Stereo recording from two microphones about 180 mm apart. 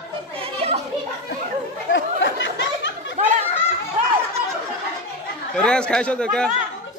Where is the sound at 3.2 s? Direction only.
45° right (ahead or behind).